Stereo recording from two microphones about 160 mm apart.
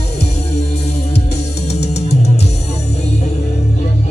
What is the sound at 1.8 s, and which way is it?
Music, 45° left (ahead or behind).